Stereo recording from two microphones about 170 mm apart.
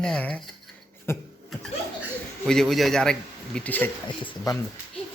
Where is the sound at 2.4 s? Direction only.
5° left (ahead or behind).